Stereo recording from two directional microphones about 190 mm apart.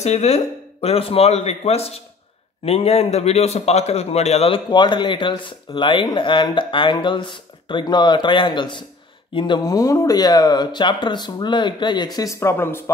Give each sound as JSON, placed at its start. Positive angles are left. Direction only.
{"t": 0.0, "sound": "a man's voice", "side_deg": 35}